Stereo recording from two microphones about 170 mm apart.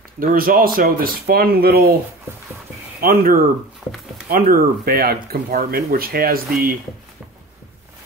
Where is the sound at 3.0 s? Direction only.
60° right (ahead or behind).